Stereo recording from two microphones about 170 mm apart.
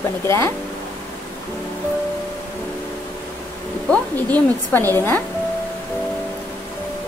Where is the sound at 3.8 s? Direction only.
10° left (ahead or behind).